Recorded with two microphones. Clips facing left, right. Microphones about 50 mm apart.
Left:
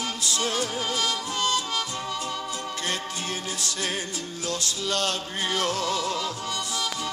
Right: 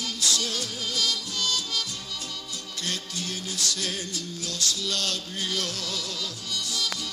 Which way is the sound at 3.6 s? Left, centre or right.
Left.